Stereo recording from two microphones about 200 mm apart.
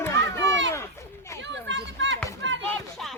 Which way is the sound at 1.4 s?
65° right (ahead or behind).